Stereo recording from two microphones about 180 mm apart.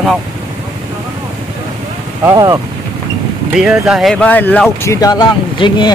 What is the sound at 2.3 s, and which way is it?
Speech, 20° right (ahead or behind).